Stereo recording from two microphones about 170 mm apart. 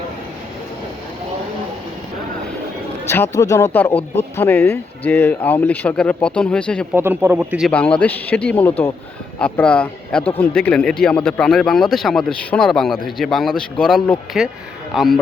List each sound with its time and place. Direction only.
3.1 s speech: 15° left (ahead or behind)
3.9 s speech: 40° left (ahead or behind)
4.4 s speech: 15° left (ahead or behind)
6.9 s speech: 15° right (ahead or behind)
7.7 s speech: 10° left (ahead or behind)